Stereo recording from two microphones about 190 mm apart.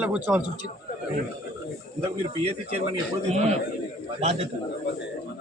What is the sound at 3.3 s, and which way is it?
Speech, 35° right (ahead or behind).